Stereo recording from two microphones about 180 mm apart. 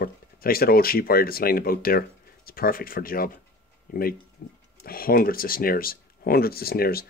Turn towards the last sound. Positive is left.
turn(degrees=55)  # may be behind; listen again after turning